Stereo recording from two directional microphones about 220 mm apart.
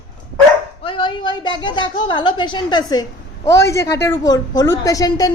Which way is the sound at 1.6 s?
20° left (ahead or behind).